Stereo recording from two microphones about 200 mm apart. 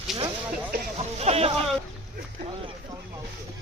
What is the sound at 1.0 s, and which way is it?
Speech, 30° right (ahead or behind).